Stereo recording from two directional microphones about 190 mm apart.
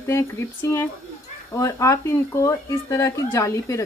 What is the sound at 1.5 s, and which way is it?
A woman's voice, 15° left (ahead or behind).